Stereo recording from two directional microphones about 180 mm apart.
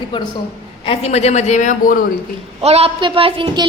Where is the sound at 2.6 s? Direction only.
35° right (ahead or behind).